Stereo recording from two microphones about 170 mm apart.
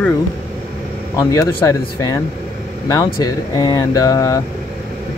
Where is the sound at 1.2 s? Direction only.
15° left (ahead or behind).